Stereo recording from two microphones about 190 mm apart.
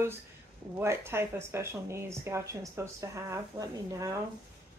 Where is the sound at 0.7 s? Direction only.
15° right (ahead or behind).